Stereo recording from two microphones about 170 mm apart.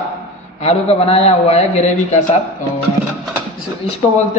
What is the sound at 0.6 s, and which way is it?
A man's voice, 40° left (ahead or behind).